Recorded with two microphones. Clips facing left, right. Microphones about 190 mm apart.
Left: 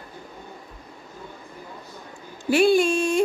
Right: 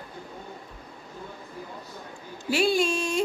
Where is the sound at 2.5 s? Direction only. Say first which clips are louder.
Left 6 dB; 55° left (ahead or behind).